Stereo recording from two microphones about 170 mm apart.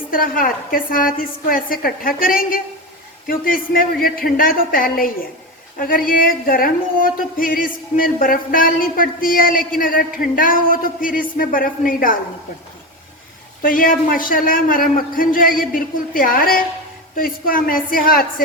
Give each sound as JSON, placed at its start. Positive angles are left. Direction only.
{"t": 0.1, "sound": "speech", "side_deg": 55}
{"t": 13.6, "sound": "speech", "side_deg": 55}